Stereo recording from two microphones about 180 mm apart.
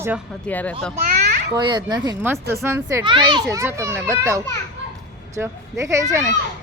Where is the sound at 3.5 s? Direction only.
15° right (ahead or behind).